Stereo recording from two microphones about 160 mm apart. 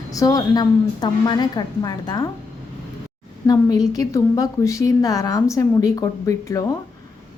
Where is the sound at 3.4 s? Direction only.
20° left (ahead or behind).